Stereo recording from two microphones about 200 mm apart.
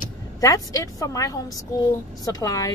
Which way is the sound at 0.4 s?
15° left (ahead or behind).